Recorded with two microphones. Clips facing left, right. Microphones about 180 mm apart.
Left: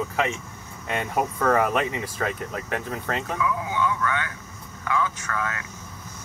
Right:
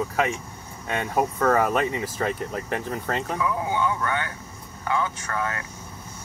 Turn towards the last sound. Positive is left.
turn(degrees=-30)  # may be behind; listen again after turning